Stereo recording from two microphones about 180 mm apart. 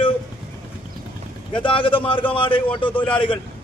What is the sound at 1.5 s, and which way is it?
A man's voice, 30° left (ahead or behind).